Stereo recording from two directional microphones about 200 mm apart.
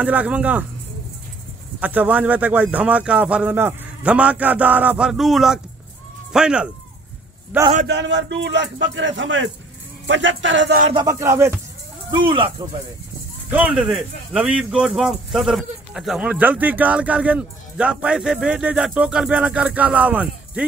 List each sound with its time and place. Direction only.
0.0 s speech: 5° right (ahead or behind)
1.8 s speech: 10° right (ahead or behind)
7.8 s speech: 60° right (ahead or behind)
10.9 s speech: 20° right (ahead or behind)
12.1 s speech: 25° right (ahead or behind)
13.5 s speech: 5° right (ahead or behind)